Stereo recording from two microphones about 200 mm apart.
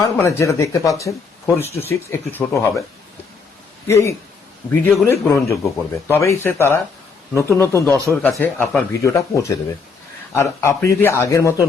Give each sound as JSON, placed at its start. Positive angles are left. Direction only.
{"t": 0.0, "sound": "speech", "side_deg": 15}
{"t": 1.5, "sound": "speech", "side_deg": -10}
{"t": 1.9, "sound": "speech", "side_deg": 10}
{"t": 4.7, "sound": "speech", "side_deg": 15}